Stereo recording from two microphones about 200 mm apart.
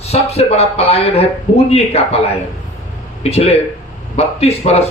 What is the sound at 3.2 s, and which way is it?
Speech, 30° left (ahead or behind).